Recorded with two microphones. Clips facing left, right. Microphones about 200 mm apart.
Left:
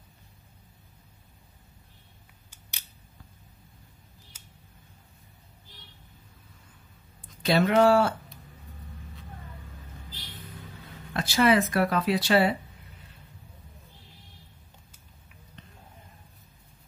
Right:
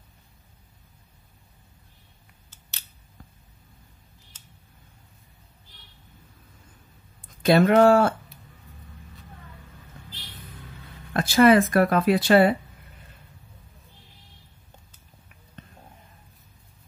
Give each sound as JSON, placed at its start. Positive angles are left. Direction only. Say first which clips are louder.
{"t": 4.3, "sound": "a sound", "louder": "even", "side_deg": 10}
{"t": 7.4, "sound": "speech", "louder": "right 4 dB", "side_deg": -50}
{"t": 11.1, "sound": "speech", "louder": "right 6 dB", "side_deg": -50}